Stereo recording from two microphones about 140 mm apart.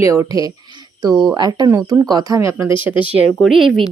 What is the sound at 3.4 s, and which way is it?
Speech, centre (ahead or behind).